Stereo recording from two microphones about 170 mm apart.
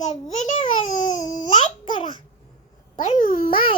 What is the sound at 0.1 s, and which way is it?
Babbling, 50° left (ahead or behind).